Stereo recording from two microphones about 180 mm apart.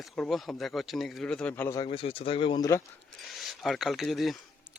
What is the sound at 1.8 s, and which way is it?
Speech, 30° left (ahead or behind).